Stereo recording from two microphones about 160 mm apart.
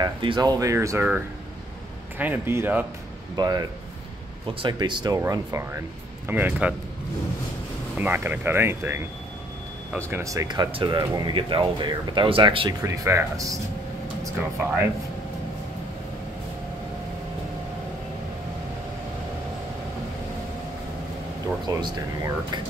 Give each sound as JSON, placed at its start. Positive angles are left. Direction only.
{"t": 0.0, "sound": "speech", "side_deg": -30}
{"t": 2.1, "sound": "speech", "side_deg": -10}
{"t": 5.2, "sound": "speech", "side_deg": -20}
{"t": 8.0, "sound": "speech", "side_deg": -10}
{"t": 21.6, "sound": "speech", "side_deg": -25}